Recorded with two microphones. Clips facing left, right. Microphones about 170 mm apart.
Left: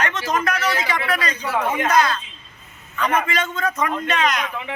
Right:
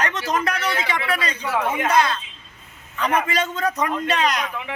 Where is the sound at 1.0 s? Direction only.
25° right (ahead or behind).